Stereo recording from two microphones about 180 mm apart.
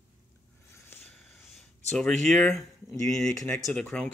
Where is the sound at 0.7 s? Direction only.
10° left (ahead or behind).